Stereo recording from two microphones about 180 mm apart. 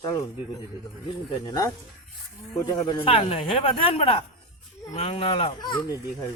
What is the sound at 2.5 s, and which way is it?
A man's voice, 20° left (ahead or behind).